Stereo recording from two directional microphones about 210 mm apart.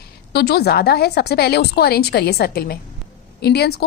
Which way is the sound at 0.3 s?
50° left (ahead or behind).